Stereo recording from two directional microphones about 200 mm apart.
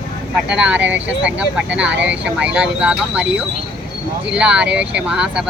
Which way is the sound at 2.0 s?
60° right (ahead or behind).